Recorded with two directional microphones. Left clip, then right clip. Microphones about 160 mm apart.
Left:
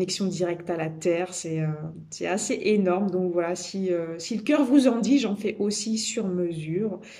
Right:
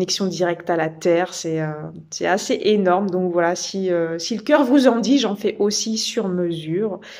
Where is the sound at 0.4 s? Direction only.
20° left (ahead or behind).